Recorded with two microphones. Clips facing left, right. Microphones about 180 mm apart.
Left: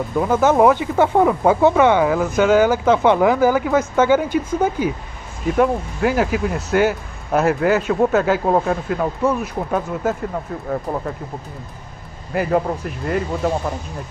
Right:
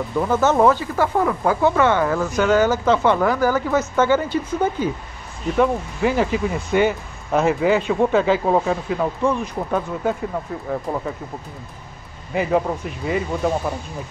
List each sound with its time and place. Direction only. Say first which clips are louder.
0.2 s speech: left 2 dB; 10° left (ahead or behind)
2.2 s speech: left 3 dB; centre (ahead or behind)
2.5 s speech: left 1 dB; 15° left (ahead or behind)
12.3 s speech: left 1 dB; centre (ahead or behind)